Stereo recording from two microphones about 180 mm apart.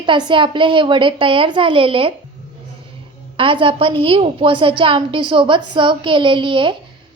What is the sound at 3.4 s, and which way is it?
A woman's voice, 30° right (ahead or behind).